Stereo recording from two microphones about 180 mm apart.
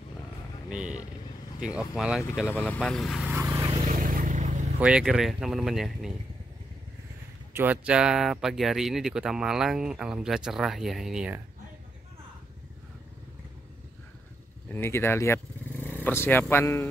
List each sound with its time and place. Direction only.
0.7 s speech: 5° right (ahead or behind)
2.5 s speech: 5° left (ahead or behind)
3.3 s vehicle: 10° right (ahead or behind)
3.8 s vehicle: 50° right (ahead or behind)
4.7 s speech: 5° right (ahead or behind)
7.5 s speech: 10° right (ahead or behind)
14.7 s speech: 10° left (ahead or behind)